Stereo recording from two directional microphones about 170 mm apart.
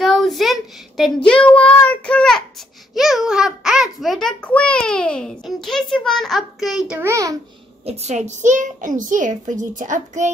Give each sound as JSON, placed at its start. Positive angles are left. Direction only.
{"t": 0.0, "sound": "child singing", "side_deg": 0}
{"t": 2.9, "sound": "a sound", "side_deg": 0}
{"t": 7.8, "sound": "a child's voice", "side_deg": -40}